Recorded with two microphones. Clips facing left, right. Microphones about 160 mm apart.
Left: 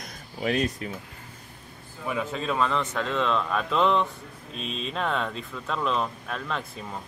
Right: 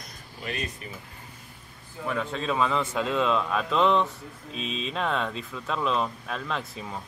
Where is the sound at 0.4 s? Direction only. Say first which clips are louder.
Left 8 dB; 90° left.